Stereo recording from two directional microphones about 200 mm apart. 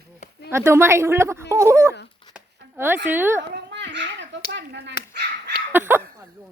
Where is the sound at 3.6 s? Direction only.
65° right (ahead or behind).